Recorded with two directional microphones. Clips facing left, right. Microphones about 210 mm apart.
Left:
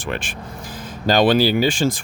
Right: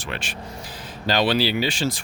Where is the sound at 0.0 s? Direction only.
50° left (ahead or behind).